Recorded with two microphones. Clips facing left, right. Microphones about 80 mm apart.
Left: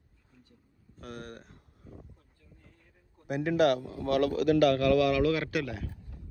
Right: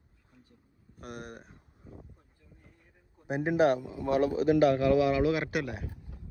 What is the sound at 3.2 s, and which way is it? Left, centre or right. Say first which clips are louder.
Speech: even; right.